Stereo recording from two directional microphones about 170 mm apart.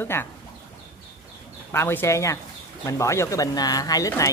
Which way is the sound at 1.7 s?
15° left (ahead or behind).